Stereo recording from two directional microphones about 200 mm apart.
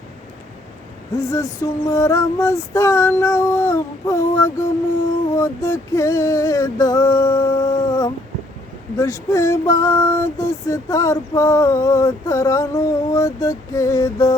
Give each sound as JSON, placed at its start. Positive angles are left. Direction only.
{"t": 1.2, "sound": "female singing", "side_deg": 15}